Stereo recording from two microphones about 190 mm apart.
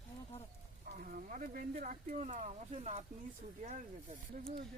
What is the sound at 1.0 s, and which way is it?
Speech, 45° right (ahead or behind).